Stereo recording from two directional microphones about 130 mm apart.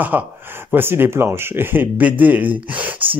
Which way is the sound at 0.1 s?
15° right (ahead or behind).